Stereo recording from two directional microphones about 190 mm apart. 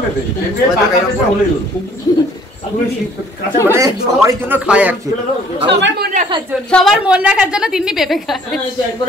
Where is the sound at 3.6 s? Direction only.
15° right (ahead or behind).